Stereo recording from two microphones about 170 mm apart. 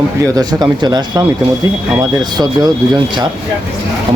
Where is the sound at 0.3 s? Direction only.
25° right (ahead or behind).